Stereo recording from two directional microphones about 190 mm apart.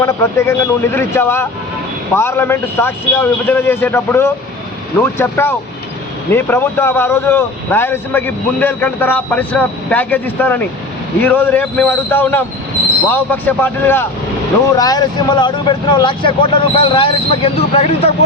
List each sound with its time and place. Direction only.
0.0 s speech: 15° left (ahead or behind); by 18.1 s 30° left (ahead or behind)